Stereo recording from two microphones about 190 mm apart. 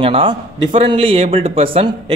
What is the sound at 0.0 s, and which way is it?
Speech, 30° right (ahead or behind).